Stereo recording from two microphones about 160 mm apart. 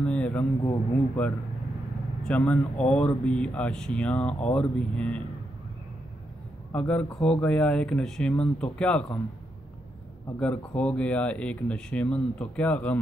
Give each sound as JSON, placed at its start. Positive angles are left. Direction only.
{"t": 0.0, "sound": "a sound", "side_deg": 5}
{"t": 1.2, "sound": "speech", "side_deg": 10}
{"t": 6.7, "sound": "speech", "side_deg": 10}
{"t": 10.4, "sound": "speech", "side_deg": 10}